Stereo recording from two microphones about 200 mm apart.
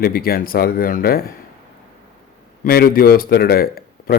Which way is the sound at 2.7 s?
50° left (ahead or behind).